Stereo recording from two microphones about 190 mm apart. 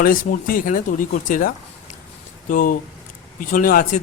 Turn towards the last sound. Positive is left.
turn(degrees=45)  # may be behind; listen again after turning